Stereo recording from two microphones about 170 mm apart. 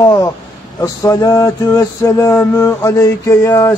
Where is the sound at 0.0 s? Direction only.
20° left (ahead or behind).